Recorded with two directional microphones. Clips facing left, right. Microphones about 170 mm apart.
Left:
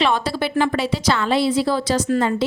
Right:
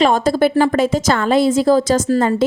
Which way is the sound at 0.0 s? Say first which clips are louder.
Right 7 dB; 45° right (ahead or behind).